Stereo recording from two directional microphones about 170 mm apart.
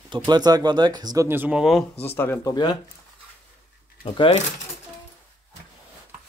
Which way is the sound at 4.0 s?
30° left (ahead or behind).